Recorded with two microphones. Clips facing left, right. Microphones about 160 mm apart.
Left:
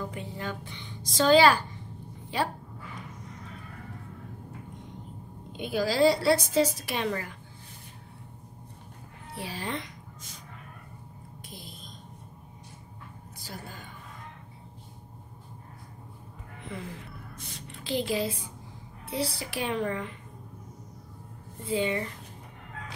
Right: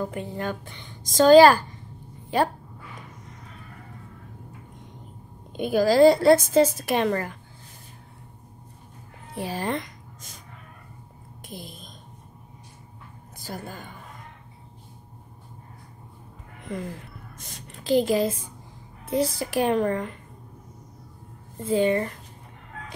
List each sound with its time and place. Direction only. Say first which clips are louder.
0.0 s a woman's voice: right 6 dB; 50° right (ahead or behind)
5.6 s a woman's voice: right 7 dB; 45° right (ahead or behind)
9.3 s a woman's voice: right 7 dB; 45° right (ahead or behind)
11.4 s speech: right 8 dB; 50° right (ahead or behind)
13.4 s a woman's voice: right 7 dB; 50° right (ahead or behind)
16.7 s a woman's voice: right 7 dB; 45° right (ahead or behind)
21.6 s a woman's voice: right 7 dB; 45° right (ahead or behind)